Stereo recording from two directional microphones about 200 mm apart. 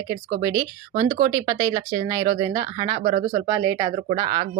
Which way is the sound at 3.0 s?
40° right (ahead or behind).